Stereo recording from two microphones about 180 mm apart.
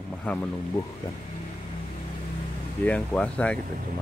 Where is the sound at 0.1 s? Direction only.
5° left (ahead or behind).